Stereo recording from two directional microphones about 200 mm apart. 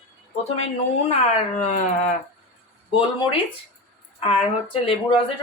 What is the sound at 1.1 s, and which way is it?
Speech, 35° left (ahead or behind).